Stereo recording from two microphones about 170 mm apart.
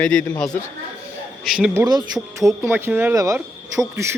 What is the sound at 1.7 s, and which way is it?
Speech, 25° right (ahead or behind).